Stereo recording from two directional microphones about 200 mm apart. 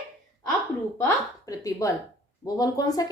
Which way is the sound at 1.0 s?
15° left (ahead or behind).